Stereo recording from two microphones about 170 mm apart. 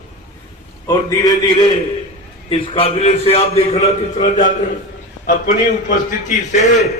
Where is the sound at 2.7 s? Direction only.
35° left (ahead or behind).